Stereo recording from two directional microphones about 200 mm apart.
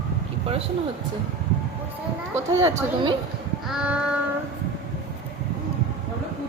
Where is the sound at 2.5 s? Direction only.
15° right (ahead or behind).